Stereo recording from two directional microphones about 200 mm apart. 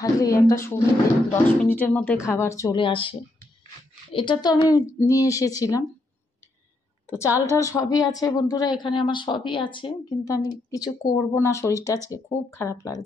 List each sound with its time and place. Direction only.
0.0 s a woman's voice: 15° left (ahead or behind)
7.3 s a woman's voice: 15° left (ahead or behind)